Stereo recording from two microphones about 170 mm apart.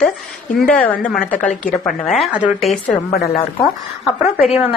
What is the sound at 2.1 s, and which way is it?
Speech, 5° right (ahead or behind).